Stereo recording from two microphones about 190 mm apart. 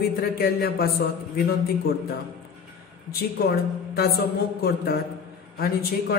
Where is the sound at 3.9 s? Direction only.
55° left (ahead or behind).